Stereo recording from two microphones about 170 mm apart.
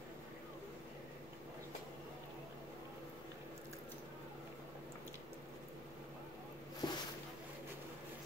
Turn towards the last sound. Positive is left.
turn(degrees=25)  # may be behind; listen again after turning